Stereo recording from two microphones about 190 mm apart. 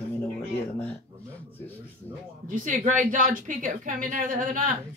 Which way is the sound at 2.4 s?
45° right (ahead or behind).